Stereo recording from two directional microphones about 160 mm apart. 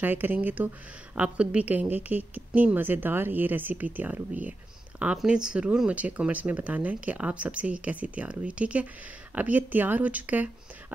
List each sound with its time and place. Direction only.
0.0 s a woman's voice: 10° right (ahead or behind)